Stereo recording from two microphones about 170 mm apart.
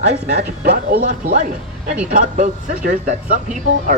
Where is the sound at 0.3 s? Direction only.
60° right (ahead or behind).